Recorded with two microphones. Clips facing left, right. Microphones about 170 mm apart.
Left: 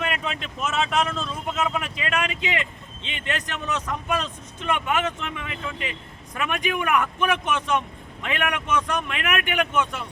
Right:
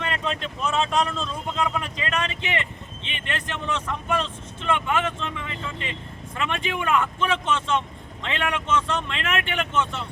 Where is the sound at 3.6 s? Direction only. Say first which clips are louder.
Even; 15° left (ahead or behind).